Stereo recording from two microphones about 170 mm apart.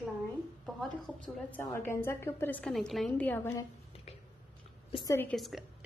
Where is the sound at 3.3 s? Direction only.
15° left (ahead or behind).